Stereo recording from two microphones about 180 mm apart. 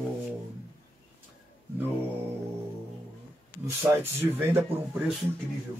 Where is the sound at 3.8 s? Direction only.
15° right (ahead or behind).